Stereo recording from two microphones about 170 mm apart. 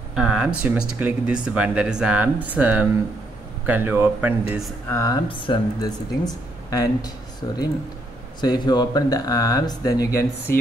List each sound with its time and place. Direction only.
0.1 s speech: 5° right (ahead or behind)
4.8 s speech: 20° left (ahead or behind)